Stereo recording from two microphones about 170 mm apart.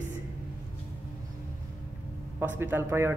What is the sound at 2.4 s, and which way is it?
Speech, 10° right (ahead or behind).